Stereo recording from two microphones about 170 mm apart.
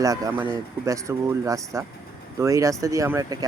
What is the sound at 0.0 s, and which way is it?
Speech, 15° right (ahead or behind).